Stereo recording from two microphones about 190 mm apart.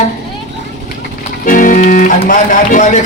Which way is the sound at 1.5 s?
45° left (ahead or behind).